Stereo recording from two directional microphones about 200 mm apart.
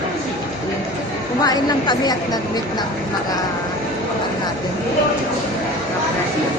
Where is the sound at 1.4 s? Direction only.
20° left (ahead or behind).